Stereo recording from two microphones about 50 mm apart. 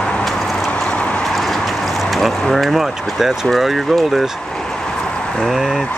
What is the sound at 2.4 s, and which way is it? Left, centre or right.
Speech, centre.